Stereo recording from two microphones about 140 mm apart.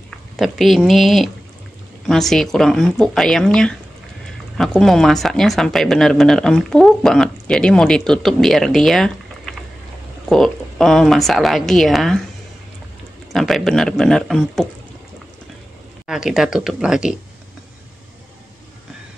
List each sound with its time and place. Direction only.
0.4 s speech: centre (ahead or behind)
13.3 s speech: centre (ahead or behind)
16.1 s speech: 5° right (ahead or behind)